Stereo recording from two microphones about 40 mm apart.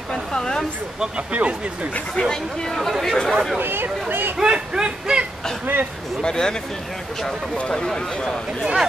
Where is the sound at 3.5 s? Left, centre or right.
Right.